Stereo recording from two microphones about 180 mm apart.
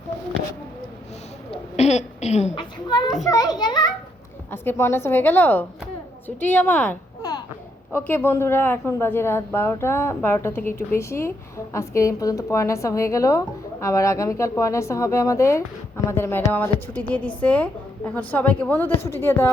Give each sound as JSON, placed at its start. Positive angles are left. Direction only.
{"t": 1.5, "sound": "a woman's voice", "side_deg": 35}
{"t": 2.6, "sound": "a child's voice", "side_deg": 25}
{"t": 4.5, "sound": "a man's voice", "side_deg": 10}
{"t": 7.2, "sound": "a sound", "side_deg": 20}
{"t": 7.9, "sound": "a man's voice", "side_deg": 10}